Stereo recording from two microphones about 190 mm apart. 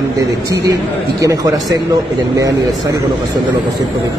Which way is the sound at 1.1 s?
20° right (ahead or behind).